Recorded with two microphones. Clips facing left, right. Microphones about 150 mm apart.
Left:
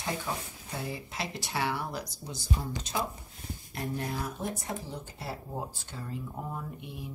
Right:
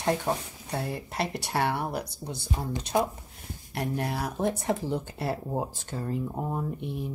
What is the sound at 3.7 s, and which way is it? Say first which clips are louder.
Speech: right 4 dB; 75° right (ahead or behind).